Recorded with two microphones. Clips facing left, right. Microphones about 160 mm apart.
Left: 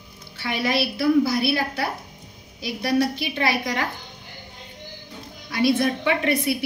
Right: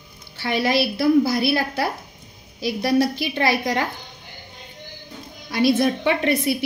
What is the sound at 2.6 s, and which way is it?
A woman's voice, 35° right (ahead or behind).